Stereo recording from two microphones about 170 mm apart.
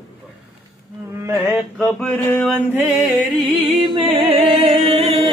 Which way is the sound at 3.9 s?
30° right (ahead or behind).